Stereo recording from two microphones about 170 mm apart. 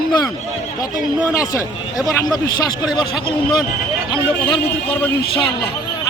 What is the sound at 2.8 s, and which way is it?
A man's voice, 25° left (ahead or behind).